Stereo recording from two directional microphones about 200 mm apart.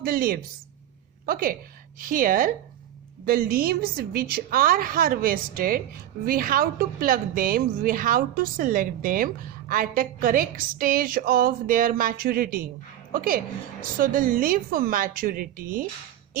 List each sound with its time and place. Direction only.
0.0 s a woman's voice: 45° right (ahead or behind)